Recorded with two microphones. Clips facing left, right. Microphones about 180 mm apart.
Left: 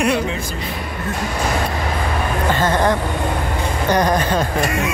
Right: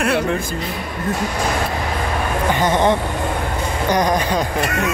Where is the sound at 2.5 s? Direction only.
20° right (ahead or behind).